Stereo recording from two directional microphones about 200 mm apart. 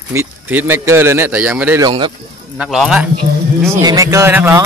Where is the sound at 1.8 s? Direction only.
25° right (ahead or behind).